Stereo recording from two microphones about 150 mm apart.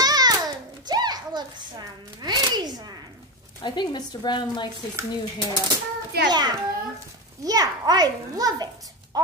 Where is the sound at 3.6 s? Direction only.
30° left (ahead or behind).